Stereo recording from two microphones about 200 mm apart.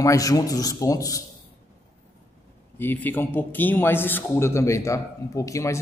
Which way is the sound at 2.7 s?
10° left (ahead or behind).